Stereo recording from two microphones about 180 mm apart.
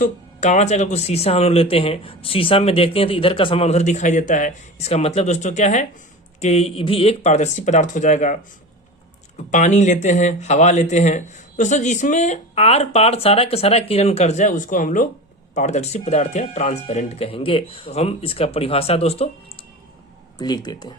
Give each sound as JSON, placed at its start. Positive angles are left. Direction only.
{"t": 0.0, "sound": "speech", "side_deg": 40}
{"t": 9.5, "sound": "speech", "side_deg": 40}
{"t": 20.4, "sound": "speech", "side_deg": 25}